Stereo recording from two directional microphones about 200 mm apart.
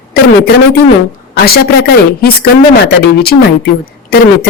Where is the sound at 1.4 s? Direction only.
50° left (ahead or behind).